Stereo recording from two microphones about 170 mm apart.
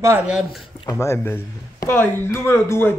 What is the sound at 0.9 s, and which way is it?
Speech, 15° left (ahead or behind).